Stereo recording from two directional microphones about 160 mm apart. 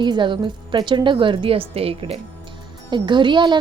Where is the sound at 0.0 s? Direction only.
30° right (ahead or behind).